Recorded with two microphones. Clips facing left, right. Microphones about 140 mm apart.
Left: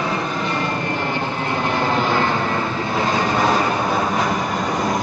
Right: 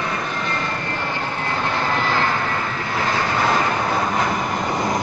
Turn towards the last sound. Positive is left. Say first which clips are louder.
# left 2 dB
turn(degrees=15)  # may be behind; listen again after turning